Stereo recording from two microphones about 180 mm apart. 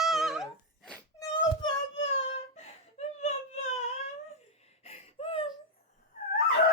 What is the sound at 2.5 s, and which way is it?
Wail, 35° left (ahead or behind).